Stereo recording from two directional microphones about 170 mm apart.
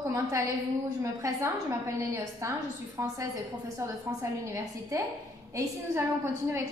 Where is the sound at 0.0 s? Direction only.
20° right (ahead or behind).